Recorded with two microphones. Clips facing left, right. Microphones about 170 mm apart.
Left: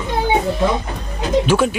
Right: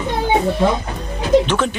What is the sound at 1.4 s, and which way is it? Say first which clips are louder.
Speech: left 3 dB; 10° left (ahead or behind).